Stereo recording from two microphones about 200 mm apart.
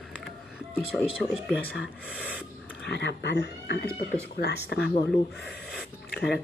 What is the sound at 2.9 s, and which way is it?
Speech, 60° left (ahead or behind).